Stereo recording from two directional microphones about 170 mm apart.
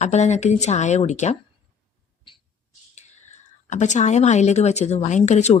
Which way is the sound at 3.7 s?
45° left (ahead or behind).